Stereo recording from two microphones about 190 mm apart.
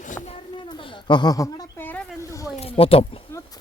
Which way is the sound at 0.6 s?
25° left (ahead or behind).